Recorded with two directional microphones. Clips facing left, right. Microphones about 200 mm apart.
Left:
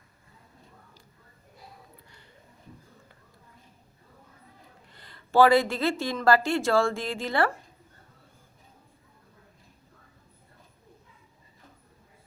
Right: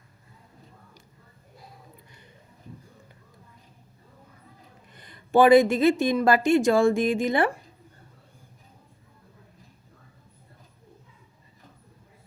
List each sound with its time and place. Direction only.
4.9 s speech: 20° right (ahead or behind)